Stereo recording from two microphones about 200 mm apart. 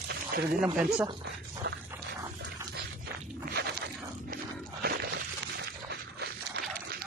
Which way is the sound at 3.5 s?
55° right (ahead or behind).